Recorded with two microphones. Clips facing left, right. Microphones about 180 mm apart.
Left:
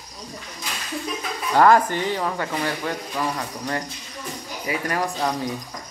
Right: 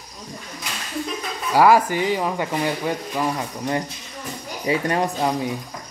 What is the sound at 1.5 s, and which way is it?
Speech, 10° right (ahead or behind).